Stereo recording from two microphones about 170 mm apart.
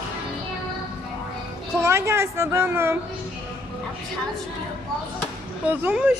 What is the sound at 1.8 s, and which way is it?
Speech, 15° right (ahead or behind).